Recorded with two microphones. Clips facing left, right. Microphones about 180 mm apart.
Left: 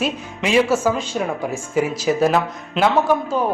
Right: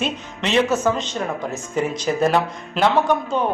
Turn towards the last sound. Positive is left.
turn(degrees=5)  # may be behind; listen again after turning